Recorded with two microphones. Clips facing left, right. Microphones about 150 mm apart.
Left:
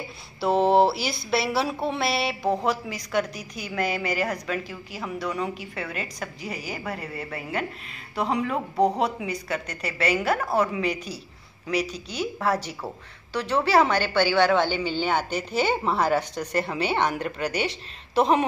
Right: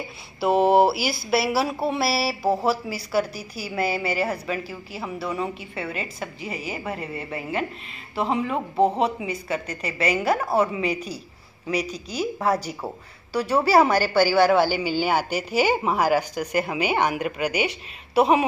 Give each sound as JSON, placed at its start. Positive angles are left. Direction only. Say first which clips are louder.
{"t": 0.4, "sound": "a woman's voice", "louder": "right 2 dB", "side_deg": -5}
{"t": 11.9, "sound": "a woman's voice", "louder": "right 2 dB", "side_deg": -35}
{"t": 12.6, "sound": "a woman's voice", "louder": "right 3 dB", "side_deg": -10}